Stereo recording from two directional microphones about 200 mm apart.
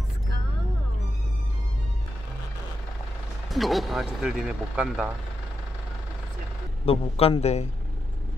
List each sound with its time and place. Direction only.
3.4 s speech: centre (ahead or behind)
6.9 s speech: 30° left (ahead or behind)